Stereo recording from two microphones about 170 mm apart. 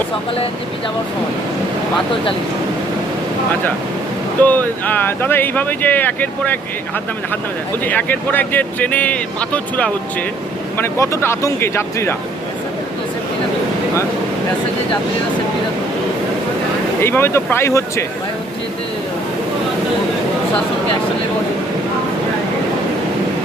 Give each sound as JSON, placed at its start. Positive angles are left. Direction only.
{"t": 4.4, "sound": "speech", "side_deg": 10}
{"t": 7.9, "sound": "speech", "side_deg": 10}
{"t": 17.0, "sound": "speech", "side_deg": 15}